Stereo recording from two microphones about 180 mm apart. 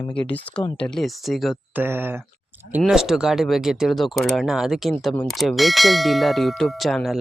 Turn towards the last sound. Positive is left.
turn(degrees=0)  # may be behind; listen again after turning